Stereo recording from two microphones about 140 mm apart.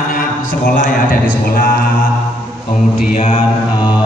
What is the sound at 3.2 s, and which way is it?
Mantra, 45° left (ahead or behind).